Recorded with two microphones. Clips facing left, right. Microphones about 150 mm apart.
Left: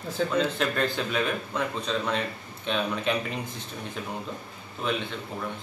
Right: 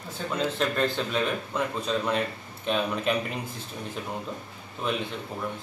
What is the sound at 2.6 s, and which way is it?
Speech, 5° right (ahead or behind).